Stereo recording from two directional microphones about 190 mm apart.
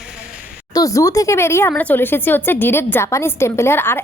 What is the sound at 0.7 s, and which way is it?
A woman's voice, 15° left (ahead or behind).